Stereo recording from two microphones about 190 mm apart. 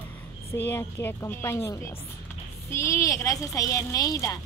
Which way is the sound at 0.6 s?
15° left (ahead or behind).